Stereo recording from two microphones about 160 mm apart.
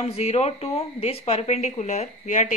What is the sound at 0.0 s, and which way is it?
Speech, 40° left (ahead or behind).